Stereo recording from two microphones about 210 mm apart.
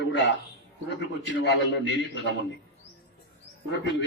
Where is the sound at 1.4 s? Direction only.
55° left (ahead or behind).